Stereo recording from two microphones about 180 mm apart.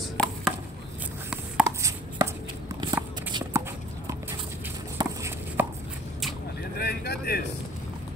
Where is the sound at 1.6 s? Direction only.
15° right (ahead or behind).